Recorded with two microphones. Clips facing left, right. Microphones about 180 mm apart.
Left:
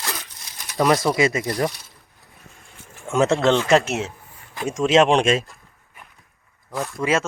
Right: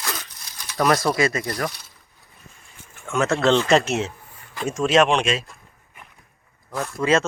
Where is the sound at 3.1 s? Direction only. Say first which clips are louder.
Left 3 dB; 30° left (ahead or behind).